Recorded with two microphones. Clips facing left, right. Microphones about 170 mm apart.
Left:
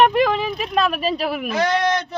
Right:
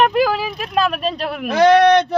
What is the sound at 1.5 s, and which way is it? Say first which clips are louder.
Speech: right 10 dB; 70° right (ahead or behind).